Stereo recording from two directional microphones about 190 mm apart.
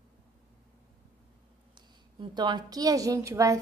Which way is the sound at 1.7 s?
25° right (ahead or behind).